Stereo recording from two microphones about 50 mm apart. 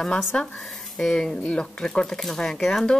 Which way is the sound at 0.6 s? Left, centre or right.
Centre.